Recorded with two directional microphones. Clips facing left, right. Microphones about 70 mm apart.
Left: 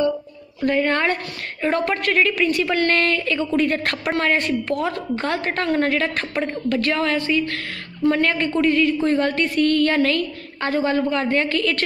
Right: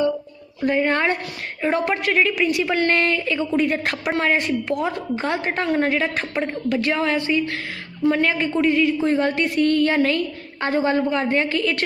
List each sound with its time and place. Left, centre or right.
0.6 s a woman's voice: centre